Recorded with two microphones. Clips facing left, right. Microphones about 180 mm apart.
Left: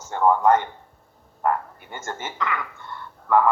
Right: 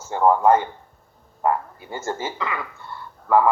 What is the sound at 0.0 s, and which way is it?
Speech, 10° right (ahead or behind).